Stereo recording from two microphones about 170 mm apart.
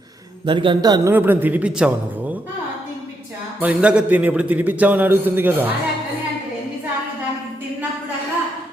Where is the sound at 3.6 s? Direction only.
10° right (ahead or behind).